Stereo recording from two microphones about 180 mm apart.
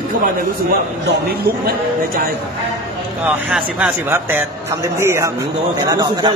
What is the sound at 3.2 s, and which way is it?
A man's voice, 5° right (ahead or behind).